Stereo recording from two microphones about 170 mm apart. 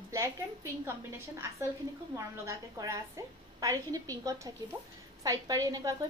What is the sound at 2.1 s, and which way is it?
A woman's voice, 15° right (ahead or behind).